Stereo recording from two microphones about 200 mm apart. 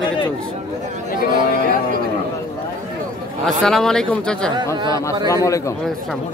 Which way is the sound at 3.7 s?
Centre (ahead or behind).